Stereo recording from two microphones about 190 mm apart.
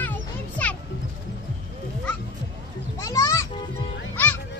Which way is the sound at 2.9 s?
15° left (ahead or behind).